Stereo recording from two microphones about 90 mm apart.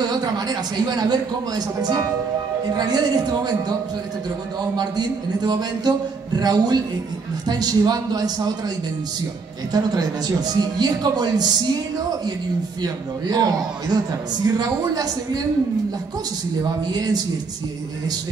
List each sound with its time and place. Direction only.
0.0 s a man's voice: 50° right (ahead or behind)
4.7 s a man's voice: 50° right (ahead or behind)
12.8 s a man's voice: 45° right (ahead or behind)
16.8 s a man's voice: 50° right (ahead or behind)